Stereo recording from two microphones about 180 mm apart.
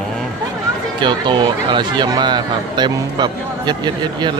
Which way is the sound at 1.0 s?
25° right (ahead or behind).